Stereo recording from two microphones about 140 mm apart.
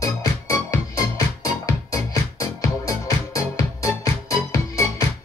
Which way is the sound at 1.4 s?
20° left (ahead or behind).